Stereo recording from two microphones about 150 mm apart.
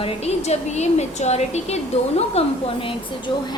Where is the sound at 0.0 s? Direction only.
45° left (ahead or behind).